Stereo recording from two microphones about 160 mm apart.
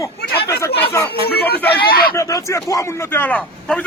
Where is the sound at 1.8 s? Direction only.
70° left (ahead or behind).